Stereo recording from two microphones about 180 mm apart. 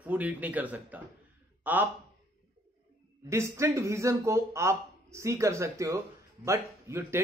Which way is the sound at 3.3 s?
15° right (ahead or behind).